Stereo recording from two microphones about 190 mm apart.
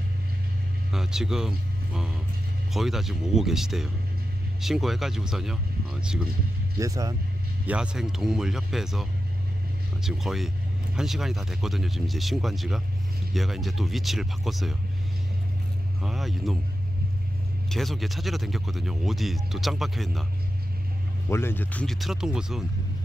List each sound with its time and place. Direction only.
0.9 s speech: 5° right (ahead or behind)
2.7 s speech: centre (ahead or behind)
6.8 s speech: 20° right (ahead or behind)
7.6 s speech: 5° right (ahead or behind)
10.0 s speech: centre (ahead or behind)
16.0 s speech: centre (ahead or behind)
17.6 s speech: centre (ahead or behind)
21.3 s speech: 10° left (ahead or behind)